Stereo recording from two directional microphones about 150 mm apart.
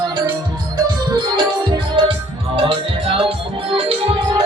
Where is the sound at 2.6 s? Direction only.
35° right (ahead or behind).